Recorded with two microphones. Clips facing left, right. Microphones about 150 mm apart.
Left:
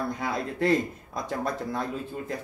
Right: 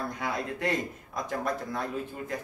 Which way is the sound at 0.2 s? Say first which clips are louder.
Left 3 dB; 35° left (ahead or behind).